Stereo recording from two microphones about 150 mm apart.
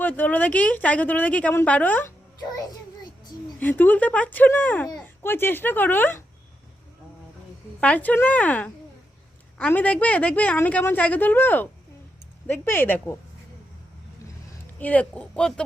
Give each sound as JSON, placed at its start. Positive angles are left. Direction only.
{"t": 0.0, "sound": "a woman's voice", "side_deg": 10}
{"t": 2.4, "sound": "child singing", "side_deg": 25}
{"t": 3.6, "sound": "a woman's voice", "side_deg": 10}
{"t": 7.8, "sound": "a woman's voice", "side_deg": 10}
{"t": 14.8, "sound": "a woman's voice", "side_deg": 10}